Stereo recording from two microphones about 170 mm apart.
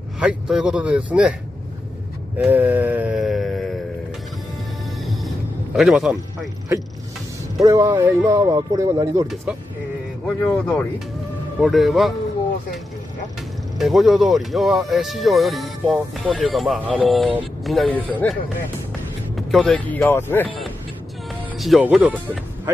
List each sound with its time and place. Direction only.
0.2 s speech: 5° right (ahead or behind)
2.3 s a sound: 10° right (ahead or behind)
5.0 s music: centre (ahead or behind)
7.5 s speech: 20° right (ahead or behind)
10.2 s speech: 10° left (ahead or behind)
13.7 s speech: centre (ahead or behind)
19.3 s speech: 5° left (ahead or behind)
21.5 s speech: centre (ahead or behind)